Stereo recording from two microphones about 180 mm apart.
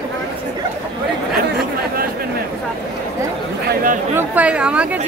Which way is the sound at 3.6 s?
50° right (ahead or behind).